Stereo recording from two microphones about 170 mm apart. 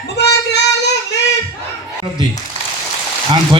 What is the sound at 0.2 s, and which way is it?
Child singing, 80° left.